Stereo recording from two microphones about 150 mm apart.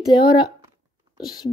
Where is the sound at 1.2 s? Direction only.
25° left (ahead or behind).